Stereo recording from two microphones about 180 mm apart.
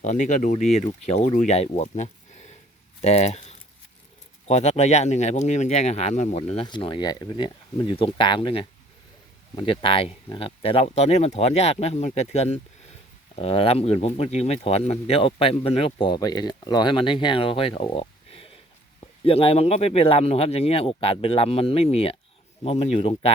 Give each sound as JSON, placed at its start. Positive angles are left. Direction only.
{"t": 0.0, "sound": "speech", "side_deg": 40}